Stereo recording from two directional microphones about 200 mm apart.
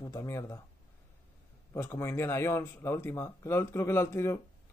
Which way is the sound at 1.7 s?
15° left (ahead or behind).